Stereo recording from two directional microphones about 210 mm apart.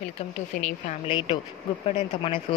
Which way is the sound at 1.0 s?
25° left (ahead or behind).